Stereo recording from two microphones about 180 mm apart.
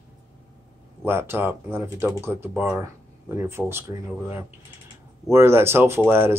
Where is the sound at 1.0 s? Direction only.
10° right (ahead or behind).